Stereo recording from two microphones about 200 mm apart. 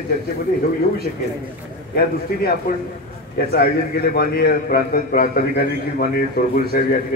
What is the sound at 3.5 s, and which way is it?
A man's voice, 50° left (ahead or behind).